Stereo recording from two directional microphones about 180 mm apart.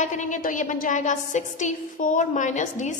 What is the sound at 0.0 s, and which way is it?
A woman's voice, 45° left (ahead or behind).